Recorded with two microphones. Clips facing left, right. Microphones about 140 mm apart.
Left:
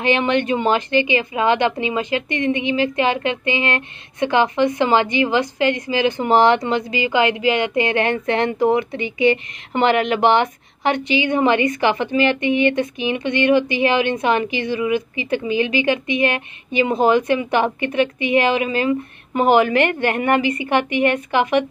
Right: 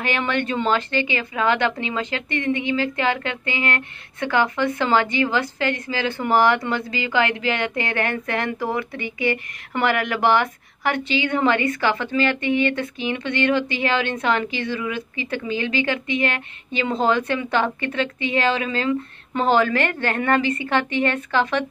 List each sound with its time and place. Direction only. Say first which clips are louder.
0.0 s a woman's voice: left 6 dB; 20° left (ahead or behind)